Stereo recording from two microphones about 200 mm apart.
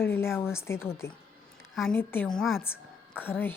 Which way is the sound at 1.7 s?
Centre (ahead or behind).